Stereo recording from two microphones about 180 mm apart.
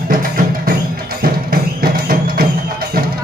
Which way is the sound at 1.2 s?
55° right (ahead or behind).